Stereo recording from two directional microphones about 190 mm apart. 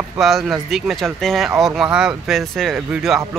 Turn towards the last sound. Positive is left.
turn(degrees=0)  # may be behind; listen again after turning